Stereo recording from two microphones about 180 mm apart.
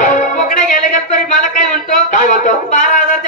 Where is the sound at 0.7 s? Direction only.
45° left (ahead or behind).